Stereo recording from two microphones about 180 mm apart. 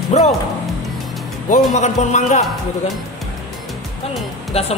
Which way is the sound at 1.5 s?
40° left (ahead or behind).